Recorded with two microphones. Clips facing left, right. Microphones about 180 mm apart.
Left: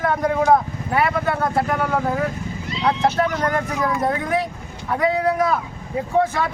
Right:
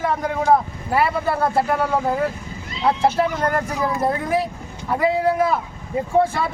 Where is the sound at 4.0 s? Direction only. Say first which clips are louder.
Right 1 dB; 5° right (ahead or behind).